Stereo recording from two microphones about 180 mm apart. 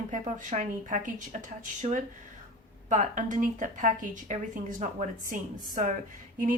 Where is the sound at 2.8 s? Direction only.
45° right (ahead or behind).